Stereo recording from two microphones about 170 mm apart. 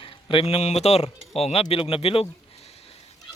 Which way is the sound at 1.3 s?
35° left (ahead or behind).